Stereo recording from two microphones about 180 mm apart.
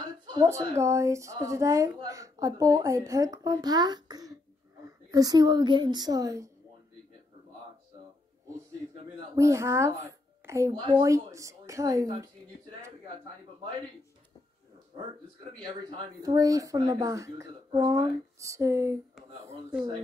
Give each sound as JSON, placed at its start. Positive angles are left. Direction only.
{"t": 0.3, "sound": "a woman's voice", "side_deg": -15}
{"t": 9.3, "sound": "a woman's voice", "side_deg": -15}
{"t": 15.9, "sound": "a woman's voice", "side_deg": -25}